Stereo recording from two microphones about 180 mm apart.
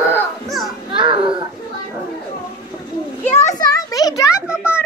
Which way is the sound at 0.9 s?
30° right (ahead or behind).